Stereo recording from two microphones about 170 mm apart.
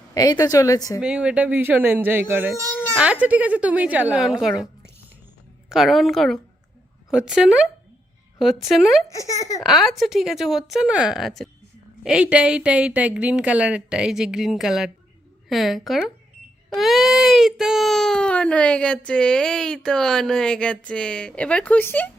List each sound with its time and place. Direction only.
0.1 s a woman's voice: 20° left (ahead or behind)
1.0 s speech: 5° right (ahead or behind)
9.1 s a woman's voice: 20° left (ahead or behind)
9.6 s speech: centre (ahead or behind)